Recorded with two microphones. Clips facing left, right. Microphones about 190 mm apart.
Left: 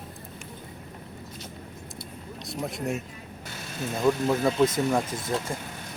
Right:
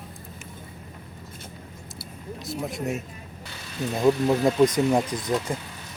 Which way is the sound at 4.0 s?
20° right (ahead or behind).